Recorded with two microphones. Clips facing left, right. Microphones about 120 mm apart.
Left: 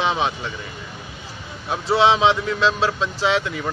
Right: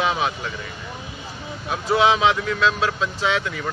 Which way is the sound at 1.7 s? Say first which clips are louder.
Left 1 dB; 30° left (ahead or behind).